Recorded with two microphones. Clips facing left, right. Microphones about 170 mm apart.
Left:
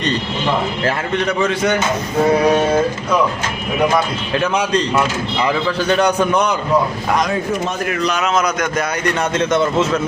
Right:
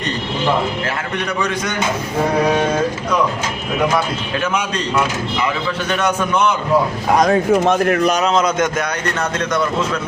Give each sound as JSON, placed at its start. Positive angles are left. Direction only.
{"t": 4.4, "sound": "a man's voice", "side_deg": 35}
{"t": 5.9, "sound": "a man's voice", "side_deg": 35}
{"t": 7.5, "sound": "speech", "side_deg": -65}
{"t": 8.2, "sound": "speech", "side_deg": -25}
{"t": 9.4, "sound": "speech", "side_deg": 25}